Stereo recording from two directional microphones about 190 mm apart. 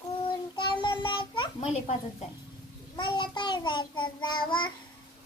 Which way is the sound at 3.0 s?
25° left (ahead or behind).